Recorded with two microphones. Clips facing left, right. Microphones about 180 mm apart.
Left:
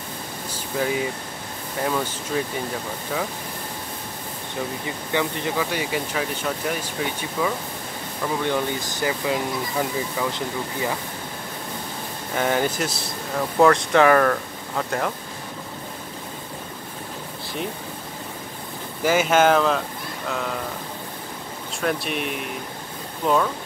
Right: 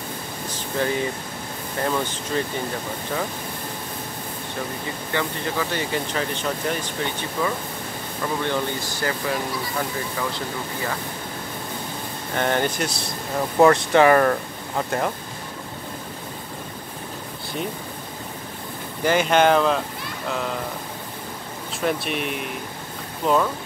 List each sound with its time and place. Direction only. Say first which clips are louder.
0.7 s speech: even; 5° left (ahead or behind)
5.1 s speech: left 2 dB; 15° left (ahead or behind)
12.4 s speech: even; 5° left (ahead or behind)
13.6 s speech: right 1 dB; 5° right (ahead or behind)
19.0 s speech: even; 5° left (ahead or behind)
21.8 s speech: right 1 dB; centre (ahead or behind)